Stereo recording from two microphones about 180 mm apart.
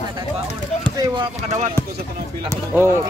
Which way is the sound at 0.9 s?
25° right (ahead or behind).